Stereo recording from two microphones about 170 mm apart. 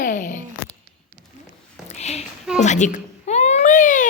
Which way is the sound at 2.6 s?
45° left (ahead or behind).